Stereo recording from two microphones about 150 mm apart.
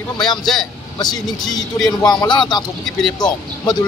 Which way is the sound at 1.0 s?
25° left (ahead or behind).